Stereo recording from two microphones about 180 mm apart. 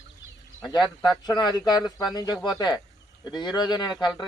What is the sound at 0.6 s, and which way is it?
Speech, 25° left (ahead or behind).